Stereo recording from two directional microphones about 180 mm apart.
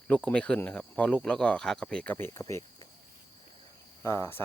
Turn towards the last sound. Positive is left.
turn(degrees=15)  # may be behind; listen again after turning